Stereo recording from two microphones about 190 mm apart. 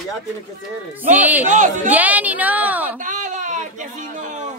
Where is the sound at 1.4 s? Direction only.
40° right (ahead or behind).